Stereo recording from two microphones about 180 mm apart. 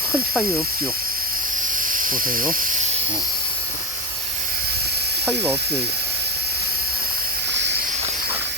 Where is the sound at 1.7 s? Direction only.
50° right (ahead or behind).